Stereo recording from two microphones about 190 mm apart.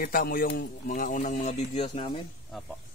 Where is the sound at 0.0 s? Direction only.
50° left (ahead or behind); by 2.2 s 30° left (ahead or behind).